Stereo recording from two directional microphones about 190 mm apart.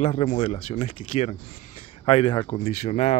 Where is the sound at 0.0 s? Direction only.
35° left (ahead or behind).